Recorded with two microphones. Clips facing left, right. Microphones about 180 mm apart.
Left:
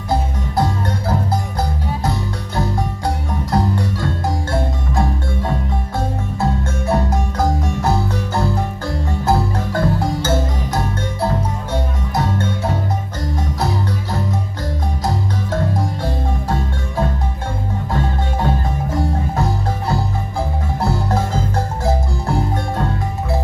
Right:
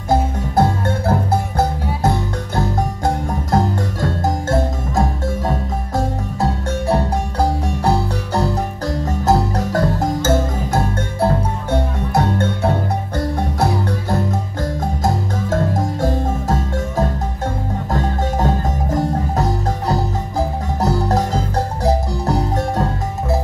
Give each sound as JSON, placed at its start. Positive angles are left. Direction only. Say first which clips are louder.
{"t": 0.1, "sound": "music", "louder": "right 3 dB", "side_deg": -50}
{"t": 3.3, "sound": "music", "louder": "right 1 dB", "side_deg": -45}
{"t": 15.0, "sound": "marimba", "louder": "right 2 dB", "side_deg": -45}
{"t": 17.9, "sound": "music", "louder": "right 2 dB", "side_deg": -40}